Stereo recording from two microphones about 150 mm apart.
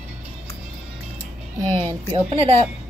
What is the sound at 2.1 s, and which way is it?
Speech, 35° right (ahead or behind).